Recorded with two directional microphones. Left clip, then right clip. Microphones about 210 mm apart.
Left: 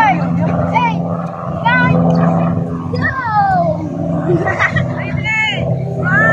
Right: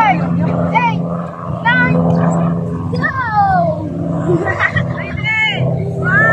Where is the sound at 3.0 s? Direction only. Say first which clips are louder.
Even; 10° right (ahead or behind).